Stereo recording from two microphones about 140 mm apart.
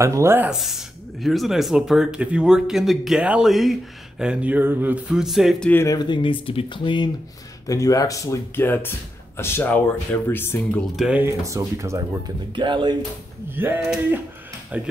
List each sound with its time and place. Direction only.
0.0 s speech: 20° right (ahead or behind)
0.5 s speech: 5° right (ahead or behind)
5.7 s speech: 15° left (ahead or behind)
5.9 s speech: 35° left (ahead or behind)
7.6 s speech: 25° left (ahead or behind)
11.1 s speech: 10° right (ahead or behind)
11.4 s speech: 20° right (ahead or behind)
12.5 s speech: 35° right (ahead or behind)
13.5 s speech: 15° right (ahead or behind)